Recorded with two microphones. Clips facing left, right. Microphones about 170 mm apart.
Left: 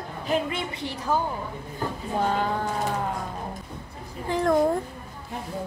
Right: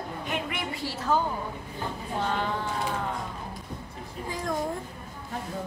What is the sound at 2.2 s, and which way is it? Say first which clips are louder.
Speech: left 4 dB; 40° left (ahead or behind).